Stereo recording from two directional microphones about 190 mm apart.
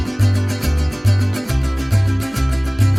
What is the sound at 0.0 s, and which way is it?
Music, centre (ahead or behind).